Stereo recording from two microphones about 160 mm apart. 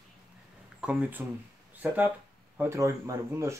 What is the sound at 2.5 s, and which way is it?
Speech, 15° right (ahead or behind).